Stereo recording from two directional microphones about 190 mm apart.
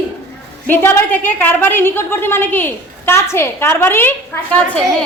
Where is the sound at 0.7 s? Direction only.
10° left (ahead or behind).